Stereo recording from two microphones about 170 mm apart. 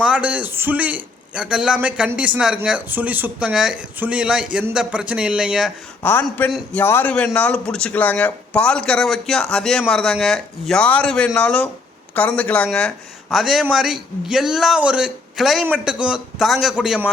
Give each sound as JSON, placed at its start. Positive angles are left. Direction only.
{"t": 0.0, "sound": "a man's voice", "side_deg": -5}
{"t": 6.0, "sound": "a man's voice", "side_deg": 10}